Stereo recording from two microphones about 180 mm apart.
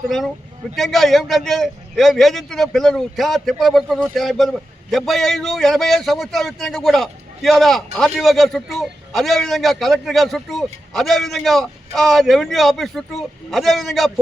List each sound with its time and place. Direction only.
0.8 s a man's voice: centre (ahead or behind)